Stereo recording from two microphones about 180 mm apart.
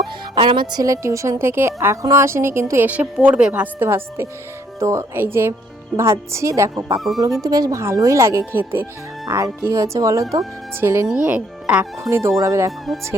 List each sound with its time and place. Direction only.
0.3 s a woman's voice: 25° right (ahead or behind)